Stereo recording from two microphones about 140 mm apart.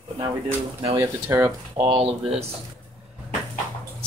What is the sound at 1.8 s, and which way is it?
Speech, 40° right (ahead or behind).